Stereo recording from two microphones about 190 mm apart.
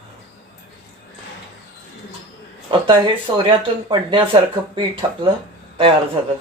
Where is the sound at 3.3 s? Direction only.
25° right (ahead or behind).